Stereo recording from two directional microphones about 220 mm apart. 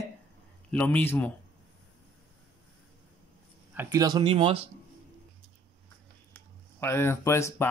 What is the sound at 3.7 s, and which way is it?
Speech, 10° right (ahead or behind).